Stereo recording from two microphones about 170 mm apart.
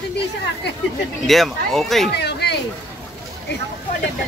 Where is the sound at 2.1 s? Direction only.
75° left (ahead or behind).